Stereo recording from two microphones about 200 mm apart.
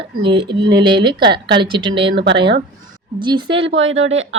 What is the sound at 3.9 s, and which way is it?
Speech, 75° right (ahead or behind).